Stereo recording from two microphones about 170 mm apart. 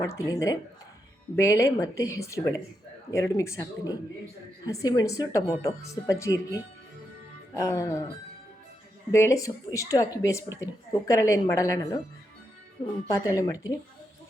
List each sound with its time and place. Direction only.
0.0 s speech: 15° left (ahead or behind)
9.1 s speech: 15° left (ahead or behind)
13.1 s speech: 20° left (ahead or behind)